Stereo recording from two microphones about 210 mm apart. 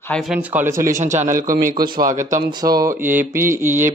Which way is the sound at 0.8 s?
35° right (ahead or behind).